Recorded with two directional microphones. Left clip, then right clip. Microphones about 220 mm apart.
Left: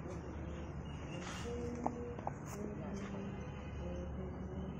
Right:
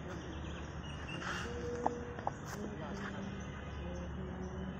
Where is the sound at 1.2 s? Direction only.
Centre (ahead or behind).